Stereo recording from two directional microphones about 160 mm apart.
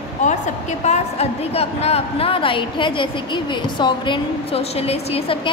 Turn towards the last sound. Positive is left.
turn(degrees=35)  # may be behind; listen again after turning